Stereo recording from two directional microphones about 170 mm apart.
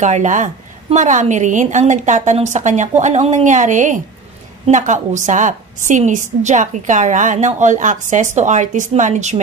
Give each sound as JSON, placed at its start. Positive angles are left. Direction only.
{"t": 0.0, "sound": "a woman's voice", "side_deg": -45}